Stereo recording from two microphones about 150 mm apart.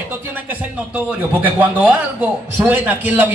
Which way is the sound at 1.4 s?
10° right (ahead or behind).